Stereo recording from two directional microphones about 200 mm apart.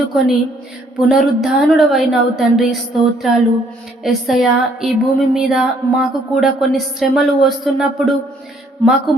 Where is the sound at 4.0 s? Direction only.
Centre (ahead or behind).